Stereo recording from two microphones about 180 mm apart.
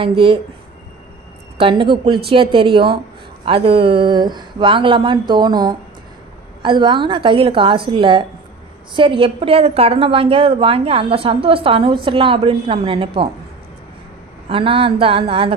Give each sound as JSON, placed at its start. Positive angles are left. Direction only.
{"t": 0.0, "sound": "a woman's voice", "side_deg": -30}
{"t": 1.6, "sound": "a woman's voice", "side_deg": -30}
{"t": 14.5, "sound": "a woman's voice", "side_deg": -30}